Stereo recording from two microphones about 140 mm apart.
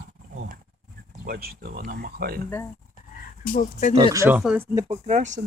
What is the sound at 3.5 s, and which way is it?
Speech, 70° left (ahead or behind).